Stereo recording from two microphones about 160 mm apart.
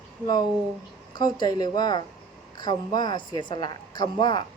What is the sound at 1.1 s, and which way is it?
A woman's voice, 25° left (ahead or behind).